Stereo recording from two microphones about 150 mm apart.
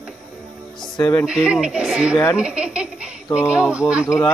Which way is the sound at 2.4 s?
5° right (ahead or behind).